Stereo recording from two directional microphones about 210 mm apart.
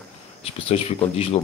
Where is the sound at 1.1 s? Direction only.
30° left (ahead or behind).